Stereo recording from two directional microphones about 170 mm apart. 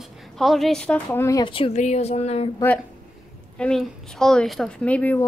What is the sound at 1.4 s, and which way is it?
Speech, 30° left (ahead or behind).